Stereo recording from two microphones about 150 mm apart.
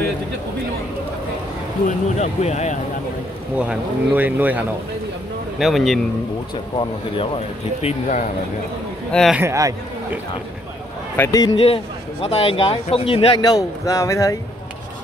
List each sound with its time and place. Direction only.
1.9 s speech: 50° left (ahead or behind)
3.5 s speech: 10° right (ahead or behind)
5.6 s speech: centre (ahead or behind)
6.5 s speech: 35° left (ahead or behind)
9.3 s a man's voice: 15° right (ahead or behind)
11.1 s speech: 25° left (ahead or behind)
11.5 s a man's voice: 40° left (ahead or behind)
13.4 s speech: 25° left (ahead or behind)